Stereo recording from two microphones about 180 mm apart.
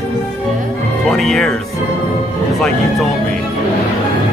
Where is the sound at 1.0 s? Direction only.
Centre (ahead or behind).